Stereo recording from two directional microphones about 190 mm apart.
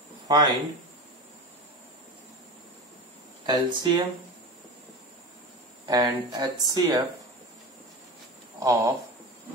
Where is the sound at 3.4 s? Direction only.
20° right (ahead or behind).